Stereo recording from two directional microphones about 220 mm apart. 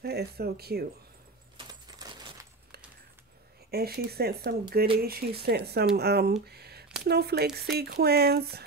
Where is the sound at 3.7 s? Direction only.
45° right (ahead or behind).